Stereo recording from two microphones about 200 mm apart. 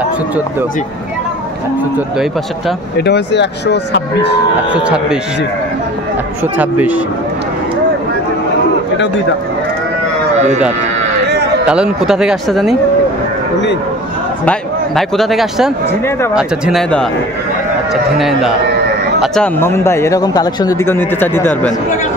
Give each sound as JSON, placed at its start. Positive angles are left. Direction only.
{"t": 3.0, "sound": "speech", "side_deg": 60}
{"t": 4.8, "sound": "speech", "side_deg": -5}
{"t": 6.5, "sound": "speech", "side_deg": -10}
{"t": 10.3, "sound": "sheep", "side_deg": -35}
{"t": 11.2, "sound": "a sound", "side_deg": -55}
{"t": 11.6, "sound": "speech", "side_deg": -5}
{"t": 14.4, "sound": "speech", "side_deg": 5}
{"t": 19.2, "sound": "speech", "side_deg": 5}